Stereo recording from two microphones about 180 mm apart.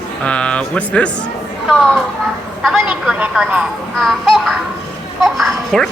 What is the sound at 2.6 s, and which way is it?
Speech, centre (ahead or behind).